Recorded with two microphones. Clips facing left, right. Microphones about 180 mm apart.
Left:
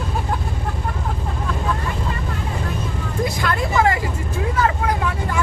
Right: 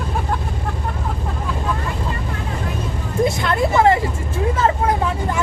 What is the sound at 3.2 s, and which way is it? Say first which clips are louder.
Vehicle: right 5 dB; 25° right (ahead or behind).